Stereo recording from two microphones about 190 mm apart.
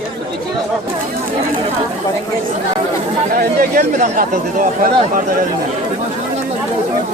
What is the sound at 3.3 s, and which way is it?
Speech, 50° right (ahead or behind).